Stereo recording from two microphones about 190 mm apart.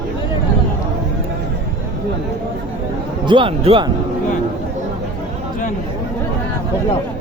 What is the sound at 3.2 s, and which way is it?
Speech, 25° right (ahead or behind).